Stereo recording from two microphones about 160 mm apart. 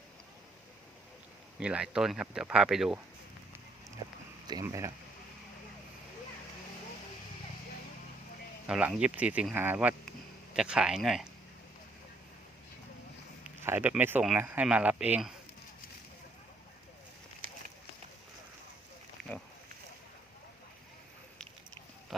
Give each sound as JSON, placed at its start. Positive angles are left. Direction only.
{"t": 1.5, "sound": "speech", "side_deg": -5}
{"t": 4.4, "sound": "speech", "side_deg": -20}
{"t": 8.6, "sound": "speech", "side_deg": -5}
{"t": 13.4, "sound": "speech", "side_deg": -10}